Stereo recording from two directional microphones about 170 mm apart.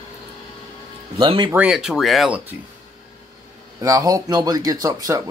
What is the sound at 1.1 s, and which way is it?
Speech, 25° right (ahead or behind).